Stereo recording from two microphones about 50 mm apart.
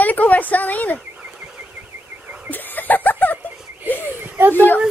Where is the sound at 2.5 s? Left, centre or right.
Left.